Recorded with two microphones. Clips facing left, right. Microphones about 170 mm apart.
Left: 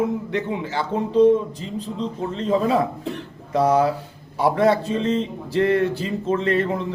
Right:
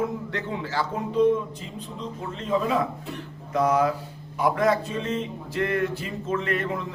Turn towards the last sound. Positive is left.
turn(degrees=30)  # may be behind; listen again after turning